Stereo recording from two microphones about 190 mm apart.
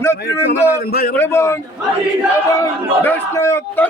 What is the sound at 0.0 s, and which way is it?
Speech, 15° left (ahead or behind).